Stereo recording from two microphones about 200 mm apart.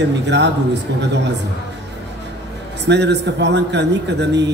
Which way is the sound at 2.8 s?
60° right (ahead or behind).